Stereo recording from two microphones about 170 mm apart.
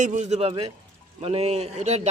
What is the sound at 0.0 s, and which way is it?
Speech, 45° right (ahead or behind).